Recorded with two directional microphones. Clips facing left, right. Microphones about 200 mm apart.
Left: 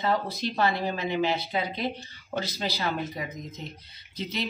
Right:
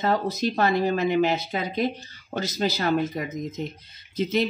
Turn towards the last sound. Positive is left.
turn(degrees=-50)  # may be behind; listen again after turning